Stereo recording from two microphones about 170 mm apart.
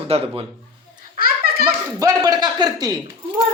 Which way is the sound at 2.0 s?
25° right (ahead or behind).